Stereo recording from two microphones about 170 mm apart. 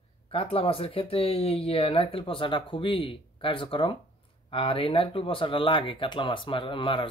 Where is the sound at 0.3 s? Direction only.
35° left (ahead or behind).